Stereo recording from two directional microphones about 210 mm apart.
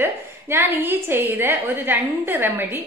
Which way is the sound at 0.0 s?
10° right (ahead or behind).